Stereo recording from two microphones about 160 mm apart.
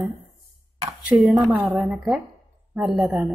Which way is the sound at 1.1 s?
10° right (ahead or behind).